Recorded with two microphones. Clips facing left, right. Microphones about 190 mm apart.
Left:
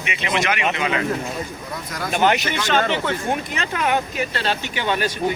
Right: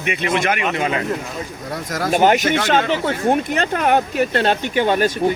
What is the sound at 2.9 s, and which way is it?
Speech, 45° right (ahead or behind).